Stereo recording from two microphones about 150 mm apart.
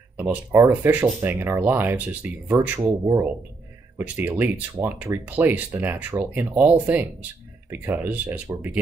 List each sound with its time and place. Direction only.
0.2 s speech: 15° right (ahead or behind)